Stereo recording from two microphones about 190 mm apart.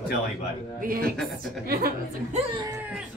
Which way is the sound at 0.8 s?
50° right (ahead or behind).